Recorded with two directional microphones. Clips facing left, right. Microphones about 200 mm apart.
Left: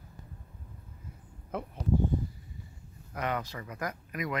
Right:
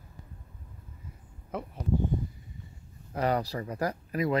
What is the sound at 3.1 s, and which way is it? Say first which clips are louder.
Speech: right 6 dB; 35° right (ahead or behind).